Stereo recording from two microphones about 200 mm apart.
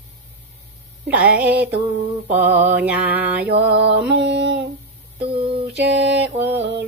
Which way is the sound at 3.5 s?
55° right (ahead or behind).